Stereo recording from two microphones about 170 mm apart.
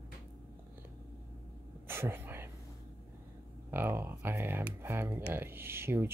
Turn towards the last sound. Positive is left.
turn(degrees=-15)  # may be behind; listen again after turning